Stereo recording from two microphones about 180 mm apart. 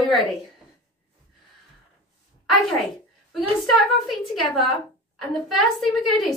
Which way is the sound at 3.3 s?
Centre (ahead or behind).